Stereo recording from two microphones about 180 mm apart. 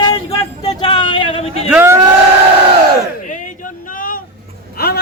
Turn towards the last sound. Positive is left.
turn(degrees=60)  # may be behind; listen again after turning